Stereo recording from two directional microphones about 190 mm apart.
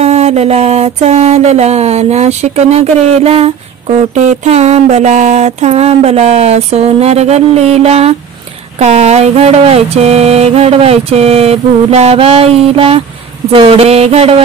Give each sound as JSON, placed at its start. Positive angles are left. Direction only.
{"t": 0.0, "sound": "mantra", "side_deg": -35}